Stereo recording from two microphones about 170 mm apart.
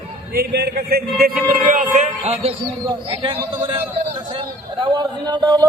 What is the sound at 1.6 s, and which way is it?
Speech, 50° right (ahead or behind).